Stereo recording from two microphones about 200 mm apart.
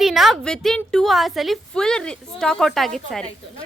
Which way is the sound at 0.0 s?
Centre (ahead or behind).